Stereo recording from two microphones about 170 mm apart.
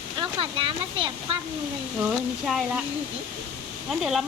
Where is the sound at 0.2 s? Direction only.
30° right (ahead or behind).